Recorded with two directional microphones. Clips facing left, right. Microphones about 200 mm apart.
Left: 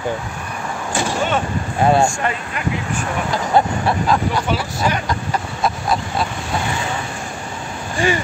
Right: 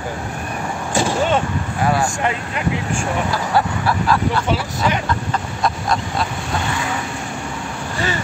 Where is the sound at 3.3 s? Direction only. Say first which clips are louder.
Left 6 dB; 20° left (ahead or behind).